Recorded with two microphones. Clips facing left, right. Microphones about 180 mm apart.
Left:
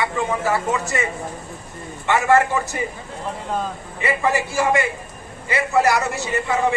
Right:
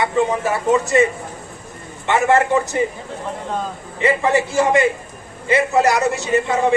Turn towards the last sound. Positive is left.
turn(degrees=-20)  # may be behind; listen again after turning